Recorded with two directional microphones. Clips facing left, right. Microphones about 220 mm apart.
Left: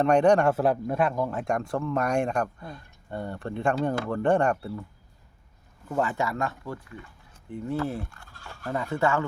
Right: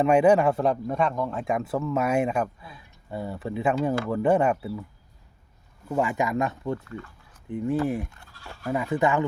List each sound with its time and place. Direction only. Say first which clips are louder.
0.0 s a man's voice: right 1 dB; 5° right (ahead or behind)
5.9 s speech: right 2 dB; 10° right (ahead or behind)